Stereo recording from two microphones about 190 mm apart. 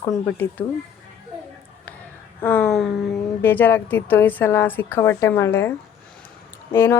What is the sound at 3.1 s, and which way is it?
Speech, 10° left (ahead or behind).